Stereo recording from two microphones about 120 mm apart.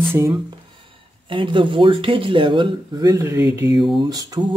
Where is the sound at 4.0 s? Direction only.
35° right (ahead or behind).